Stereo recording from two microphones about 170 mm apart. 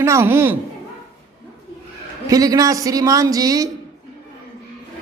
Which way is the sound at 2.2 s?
20° right (ahead or behind).